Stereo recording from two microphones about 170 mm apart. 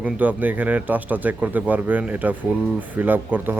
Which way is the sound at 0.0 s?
10° right (ahead or behind).